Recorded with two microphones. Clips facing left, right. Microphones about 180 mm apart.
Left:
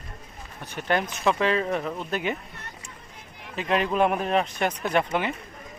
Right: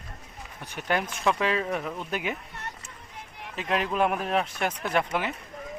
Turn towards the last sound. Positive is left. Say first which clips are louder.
# left 2 dB
turn(degrees=-5)  # may be behind; listen again after turning